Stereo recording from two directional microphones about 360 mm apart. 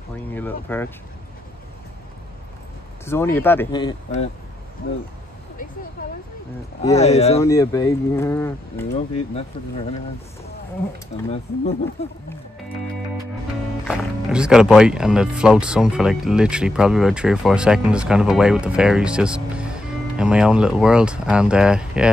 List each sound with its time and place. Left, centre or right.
0.3 s speech: centre
3.1 s speech: centre
6.8 s speech: centre
11.2 s speech: centre
13.8 s speech: centre